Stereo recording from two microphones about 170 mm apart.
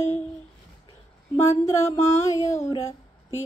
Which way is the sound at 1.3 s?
15° left (ahead or behind).